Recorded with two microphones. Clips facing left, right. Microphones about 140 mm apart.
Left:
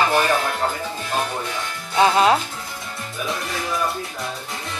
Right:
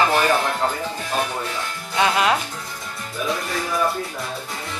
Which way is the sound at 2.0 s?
30° left (ahead or behind).